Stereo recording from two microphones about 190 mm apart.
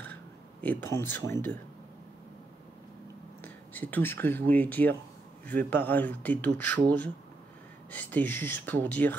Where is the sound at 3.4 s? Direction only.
10° left (ahead or behind).